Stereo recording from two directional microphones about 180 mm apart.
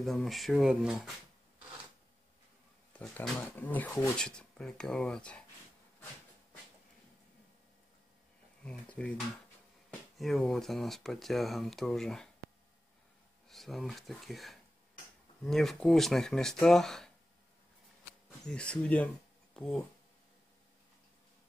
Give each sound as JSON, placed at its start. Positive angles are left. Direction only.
{"t": 0.0, "sound": "speech", "side_deg": 0}
{"t": 3.0, "sound": "speech", "side_deg": 10}
{"t": 8.6, "sound": "speech", "side_deg": 5}
{"t": 13.5, "sound": "speech", "side_deg": 0}
{"t": 18.4, "sound": "speech", "side_deg": 5}